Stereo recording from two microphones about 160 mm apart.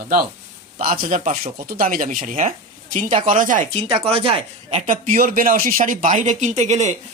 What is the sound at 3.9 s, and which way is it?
Speech, 40° right (ahead or behind).